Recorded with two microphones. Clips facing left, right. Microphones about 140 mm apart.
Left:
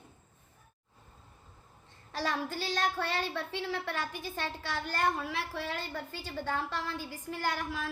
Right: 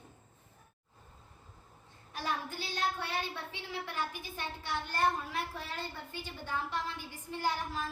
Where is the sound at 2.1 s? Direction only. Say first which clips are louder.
Left 4 dB; 90° left.